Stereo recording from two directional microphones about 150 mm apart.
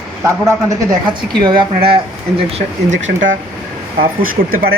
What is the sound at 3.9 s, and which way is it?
Speech, 70° right (ahead or behind).